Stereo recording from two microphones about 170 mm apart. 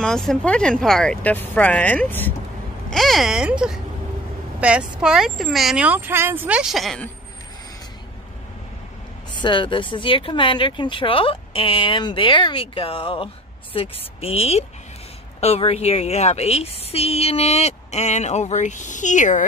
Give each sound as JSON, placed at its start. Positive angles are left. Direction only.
{"t": 0.0, "sound": "speech", "side_deg": 5}
{"t": 9.3, "sound": "speech", "side_deg": 30}